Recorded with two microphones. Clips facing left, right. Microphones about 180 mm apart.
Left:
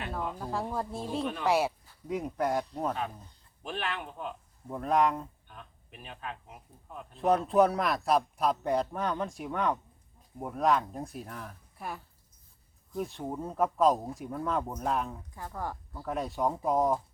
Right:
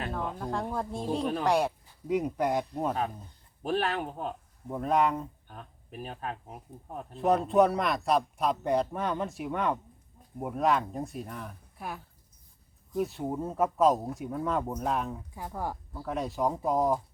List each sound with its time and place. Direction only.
0.1 s speech: 5° left (ahead or behind)
1.2 s speech: 40° right (ahead or behind)
1.5 s speech: 5° left (ahead or behind)
2.5 s speech: 15° right (ahead or behind)
3.6 s speech: 40° right (ahead or behind)
4.7 s speech: centre (ahead or behind)
5.5 s speech: 40° right (ahead or behind)
7.2 s speech: centre (ahead or behind)
15.4 s speech: 10° right (ahead or behind)
16.0 s speech: centre (ahead or behind)